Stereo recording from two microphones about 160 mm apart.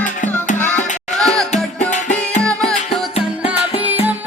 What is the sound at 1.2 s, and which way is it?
Music, 5° left (ahead or behind).